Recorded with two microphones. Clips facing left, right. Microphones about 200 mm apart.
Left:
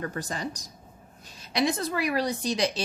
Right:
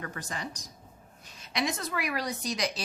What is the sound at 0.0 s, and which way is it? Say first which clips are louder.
Speech: left 6 dB; 35° left (ahead or behind).